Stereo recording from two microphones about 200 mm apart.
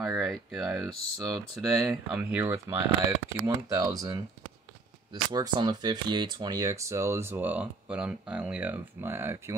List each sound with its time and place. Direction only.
0.2 s speech: centre (ahead or behind)
2.3 s speech: 15° right (ahead or behind)